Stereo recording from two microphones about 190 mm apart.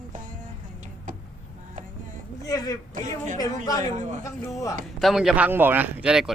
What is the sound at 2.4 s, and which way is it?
Speech, 20° left (ahead or behind).